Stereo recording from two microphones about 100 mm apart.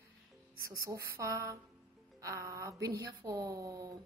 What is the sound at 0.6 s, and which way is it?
Speech, 30° right (ahead or behind).